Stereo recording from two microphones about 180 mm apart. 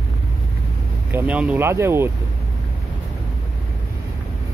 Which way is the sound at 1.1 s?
10° right (ahead or behind).